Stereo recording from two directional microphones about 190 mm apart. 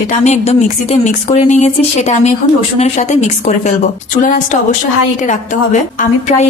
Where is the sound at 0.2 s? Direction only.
35° left (ahead or behind).